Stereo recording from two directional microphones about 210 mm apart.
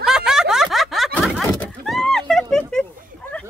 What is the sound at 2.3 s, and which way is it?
Speech, 5° left (ahead or behind).